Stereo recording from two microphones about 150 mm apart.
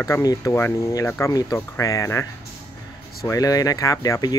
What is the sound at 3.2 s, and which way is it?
Speech, 25° left (ahead or behind).